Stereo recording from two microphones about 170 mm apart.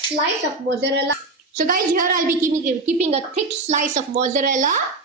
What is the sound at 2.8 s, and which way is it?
A woman's voice, 40° right (ahead or behind).